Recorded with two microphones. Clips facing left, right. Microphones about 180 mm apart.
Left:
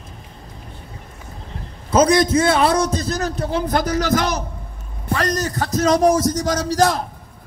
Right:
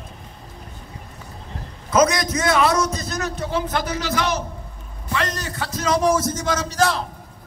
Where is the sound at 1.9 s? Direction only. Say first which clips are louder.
Left 4 dB; 30° left (ahead or behind).